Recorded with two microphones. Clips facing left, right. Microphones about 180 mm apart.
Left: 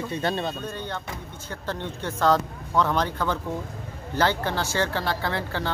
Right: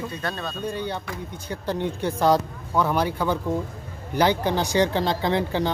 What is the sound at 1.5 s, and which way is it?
Speech, 15° right (ahead or behind).